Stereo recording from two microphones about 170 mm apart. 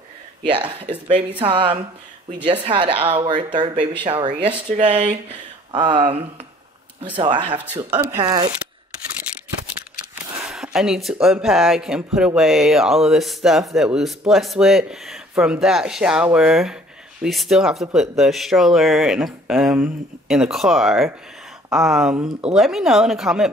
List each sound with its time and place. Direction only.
0.5 s speech: 30° right (ahead or behind)
10.4 s speech: 5° right (ahead or behind)